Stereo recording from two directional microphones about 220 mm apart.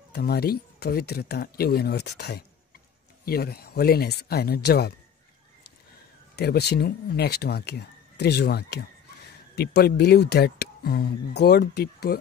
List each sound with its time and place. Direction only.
0.1 s speech: 45° left (ahead or behind)
6.3 s speech: 45° left (ahead or behind)